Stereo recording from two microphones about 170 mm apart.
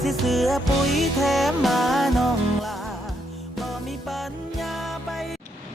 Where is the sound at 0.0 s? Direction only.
Centre (ahead or behind).